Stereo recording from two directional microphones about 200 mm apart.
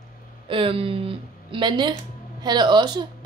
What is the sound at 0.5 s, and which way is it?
Speech, 25° right (ahead or behind).